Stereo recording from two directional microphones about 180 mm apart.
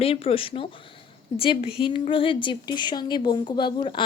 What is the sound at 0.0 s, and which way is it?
A woman's voice, 35° left (ahead or behind).